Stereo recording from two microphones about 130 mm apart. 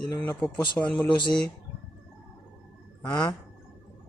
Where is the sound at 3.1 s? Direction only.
30° left (ahead or behind).